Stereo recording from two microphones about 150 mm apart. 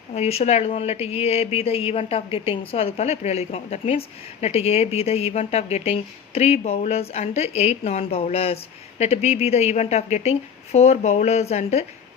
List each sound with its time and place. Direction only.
0.1 s speech: 45° left (ahead or behind)